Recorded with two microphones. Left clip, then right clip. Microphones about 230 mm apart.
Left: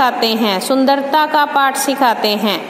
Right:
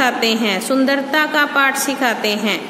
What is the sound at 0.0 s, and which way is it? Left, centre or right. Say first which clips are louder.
A woman's voice: left 2 dB; centre.